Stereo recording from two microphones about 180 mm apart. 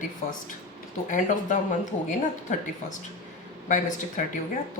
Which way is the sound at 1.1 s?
45° left (ahead or behind).